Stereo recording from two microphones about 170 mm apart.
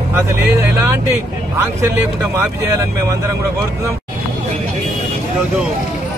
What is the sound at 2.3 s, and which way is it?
Speech, 15° right (ahead or behind).